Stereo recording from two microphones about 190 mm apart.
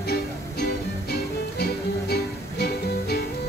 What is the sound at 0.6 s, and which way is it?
Music, 55° left (ahead or behind).